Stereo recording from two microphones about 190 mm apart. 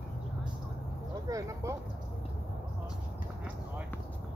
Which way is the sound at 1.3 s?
15° right (ahead or behind).